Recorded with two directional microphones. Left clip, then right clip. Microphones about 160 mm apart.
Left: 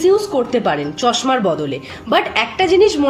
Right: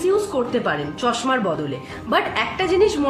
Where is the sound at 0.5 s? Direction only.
45° left (ahead or behind).